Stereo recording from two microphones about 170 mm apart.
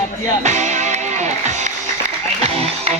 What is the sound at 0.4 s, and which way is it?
Music, 45° right (ahead or behind).